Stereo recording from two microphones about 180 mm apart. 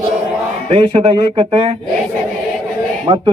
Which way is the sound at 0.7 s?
30° right (ahead or behind).